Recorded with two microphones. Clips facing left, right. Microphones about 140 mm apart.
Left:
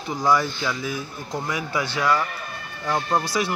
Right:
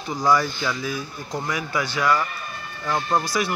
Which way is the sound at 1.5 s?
25° left (ahead or behind).